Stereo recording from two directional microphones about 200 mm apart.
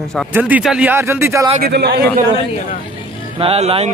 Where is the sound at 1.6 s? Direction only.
55° right (ahead or behind).